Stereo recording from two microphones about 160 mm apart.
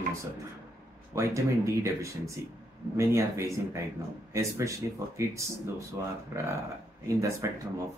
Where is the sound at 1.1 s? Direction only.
20° right (ahead or behind).